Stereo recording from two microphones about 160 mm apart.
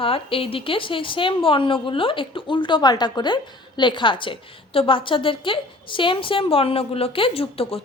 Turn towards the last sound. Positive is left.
turn(degrees=35)  # may be behind; listen again after turning